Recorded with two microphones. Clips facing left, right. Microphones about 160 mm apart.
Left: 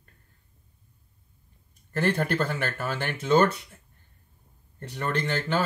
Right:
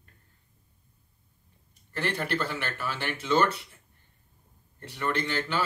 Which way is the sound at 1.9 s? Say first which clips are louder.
Left 5 dB; 45° left (ahead or behind).